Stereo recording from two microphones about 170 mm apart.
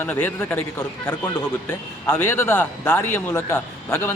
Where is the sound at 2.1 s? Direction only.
15° left (ahead or behind).